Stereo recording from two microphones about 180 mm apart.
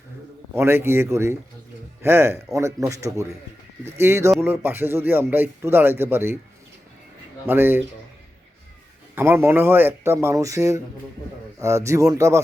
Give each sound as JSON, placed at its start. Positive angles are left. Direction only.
{"t": 0.5, "sound": "speech", "side_deg": -15}
{"t": 7.4, "sound": "speech", "side_deg": -10}
{"t": 9.1, "sound": "speech", "side_deg": -10}